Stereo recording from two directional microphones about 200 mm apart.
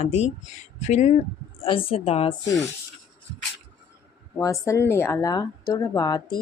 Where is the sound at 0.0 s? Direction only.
30° left (ahead or behind).